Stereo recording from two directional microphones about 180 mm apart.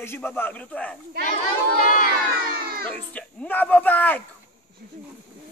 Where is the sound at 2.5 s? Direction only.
55° right (ahead or behind).